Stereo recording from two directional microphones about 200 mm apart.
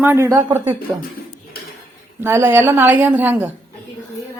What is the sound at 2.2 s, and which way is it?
A woman's voice, 15° right (ahead or behind).